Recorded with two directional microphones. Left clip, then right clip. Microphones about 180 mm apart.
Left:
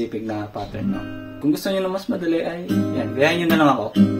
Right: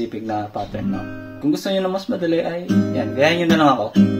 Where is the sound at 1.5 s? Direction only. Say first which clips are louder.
Right 2 dB; 15° right (ahead or behind).